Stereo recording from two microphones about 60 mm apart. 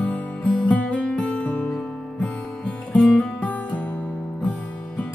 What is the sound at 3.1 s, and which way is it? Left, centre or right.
Music, left.